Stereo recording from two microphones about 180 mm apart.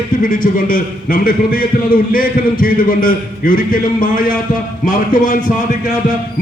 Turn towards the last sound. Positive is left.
turn(degrees=50)  # may be behind; listen again after turning